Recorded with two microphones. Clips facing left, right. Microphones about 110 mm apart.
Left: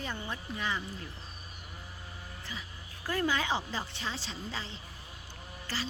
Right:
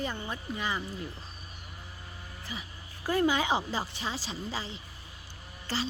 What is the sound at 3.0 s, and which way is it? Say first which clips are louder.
A woman's voice: right 4 dB; 15° right (ahead or behind).